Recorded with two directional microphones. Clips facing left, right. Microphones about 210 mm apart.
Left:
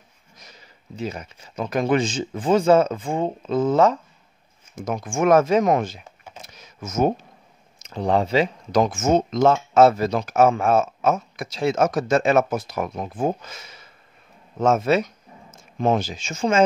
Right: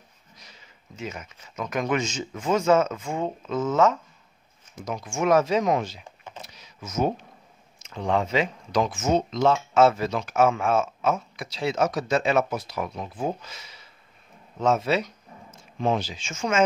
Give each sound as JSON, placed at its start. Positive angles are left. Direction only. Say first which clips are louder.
{"t": 0.4, "sound": "speech", "louder": "left 5 dB", "side_deg": 40}
{"t": 4.7, "sound": "speech", "louder": "left 5 dB", "side_deg": 50}
{"t": 6.4, "sound": "power windows", "louder": "left 5 dB", "side_deg": 50}
{"t": 7.8, "sound": "speech", "louder": "left 4 dB", "side_deg": 35}